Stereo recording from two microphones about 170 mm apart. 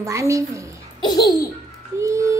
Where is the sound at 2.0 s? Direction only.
15° right (ahead or behind).